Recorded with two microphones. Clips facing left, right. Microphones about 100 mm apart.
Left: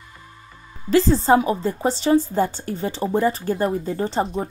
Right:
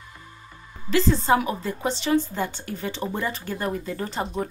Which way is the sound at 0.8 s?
40° left (ahead or behind).